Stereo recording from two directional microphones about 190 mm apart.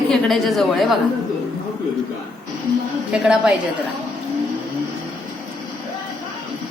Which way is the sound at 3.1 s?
5° right (ahead or behind).